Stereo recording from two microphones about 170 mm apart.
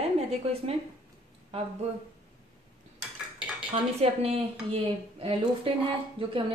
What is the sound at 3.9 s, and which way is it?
A woman's voice, 35° right (ahead or behind).